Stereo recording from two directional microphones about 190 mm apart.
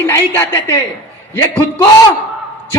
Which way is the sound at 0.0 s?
15° left (ahead or behind).